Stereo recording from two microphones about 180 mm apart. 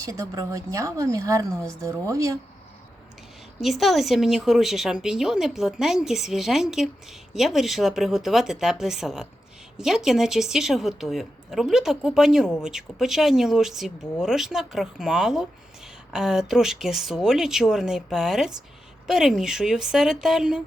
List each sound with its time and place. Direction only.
0.0 s a woman's voice: 15° right (ahead or behind)
3.6 s a woman's voice: centre (ahead or behind)